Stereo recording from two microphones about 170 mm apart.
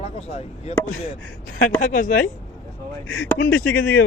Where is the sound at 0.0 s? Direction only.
40° left (ahead or behind).